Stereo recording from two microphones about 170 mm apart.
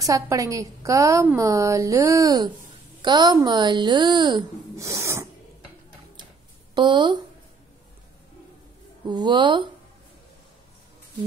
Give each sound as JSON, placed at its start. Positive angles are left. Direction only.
{"t": 0.0, "sound": "a woman's voice", "side_deg": -20}
{"t": 6.7, "sound": "speech", "side_deg": -25}
{"t": 9.0, "sound": "a woman's voice", "side_deg": -25}